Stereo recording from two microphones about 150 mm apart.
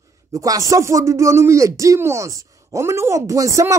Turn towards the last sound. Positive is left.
turn(degrees=-20)  # may be behind; listen again after turning